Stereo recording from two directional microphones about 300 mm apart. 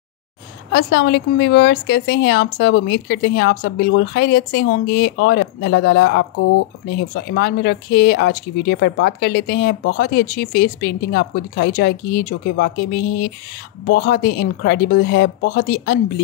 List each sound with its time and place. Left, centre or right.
0.7 s speech: left